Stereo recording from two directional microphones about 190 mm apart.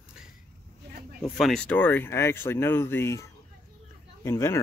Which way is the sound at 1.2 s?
Centre (ahead or behind).